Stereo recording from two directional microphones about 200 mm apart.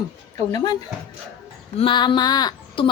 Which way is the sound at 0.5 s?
20° left (ahead or behind).